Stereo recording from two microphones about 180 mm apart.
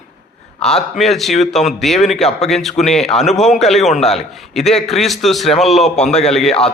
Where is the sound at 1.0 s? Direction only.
Centre (ahead or behind).